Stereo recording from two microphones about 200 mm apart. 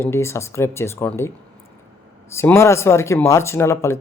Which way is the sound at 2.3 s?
15° left (ahead or behind).